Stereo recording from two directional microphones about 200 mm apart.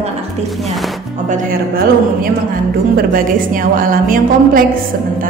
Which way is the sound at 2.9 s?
45° right (ahead or behind).